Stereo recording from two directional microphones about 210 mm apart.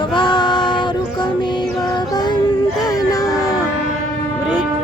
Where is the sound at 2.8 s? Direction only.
15° left (ahead or behind).